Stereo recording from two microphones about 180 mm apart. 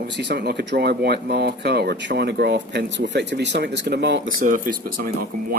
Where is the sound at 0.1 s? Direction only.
70° right (ahead or behind).